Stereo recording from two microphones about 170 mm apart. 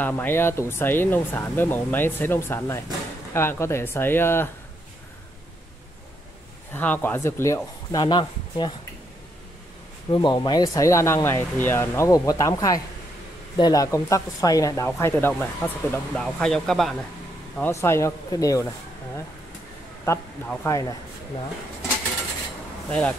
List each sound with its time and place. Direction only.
0.0 s speech: 10° left (ahead or behind)
6.7 s speech: 10° left (ahead or behind); by 8.7 s 25° left (ahead or behind)
10.1 s speech: 25° left (ahead or behind); by 16.9 s centre (ahead or behind)
17.6 s speech: 15° left (ahead or behind)
20.4 s speech: 15° left (ahead or behind)
22.8 s speech: 5° left (ahead or behind)